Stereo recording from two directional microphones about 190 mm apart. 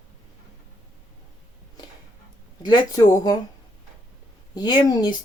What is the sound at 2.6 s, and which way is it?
Speech, 20° left (ahead or behind).